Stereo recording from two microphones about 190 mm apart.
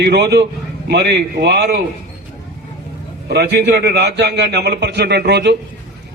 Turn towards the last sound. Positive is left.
turn(degrees=-65)  # may be behind; listen again after turning